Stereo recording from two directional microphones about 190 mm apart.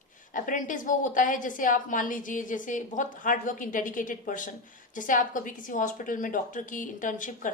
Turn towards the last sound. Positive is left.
turn(degrees=45)  # may be behind; listen again after turning